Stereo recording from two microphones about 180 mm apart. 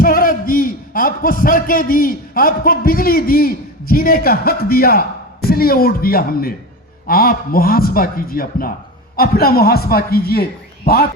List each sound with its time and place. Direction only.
0.0 s a man's voice: 50° left (ahead or behind)